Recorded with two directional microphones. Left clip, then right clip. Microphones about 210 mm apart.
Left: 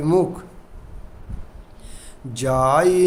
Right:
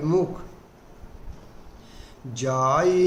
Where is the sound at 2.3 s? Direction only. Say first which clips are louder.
Left 5 dB; 50° left (ahead or behind).